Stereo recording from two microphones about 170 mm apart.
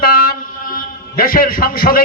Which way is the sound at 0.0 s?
60° left (ahead or behind).